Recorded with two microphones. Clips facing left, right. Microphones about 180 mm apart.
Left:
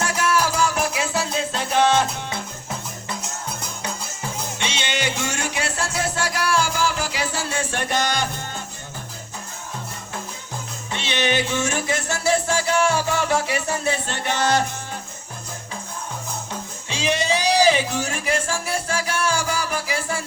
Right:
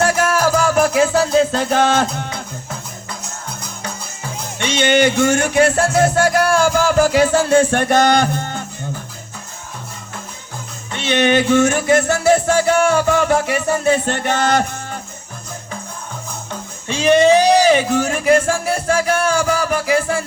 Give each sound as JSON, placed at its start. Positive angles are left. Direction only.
{"t": 0.0, "sound": "music", "side_deg": -50}
{"t": 4.8, "sound": "music", "side_deg": -50}
{"t": 10.9, "sound": "music", "side_deg": -50}
{"t": 16.9, "sound": "music", "side_deg": -50}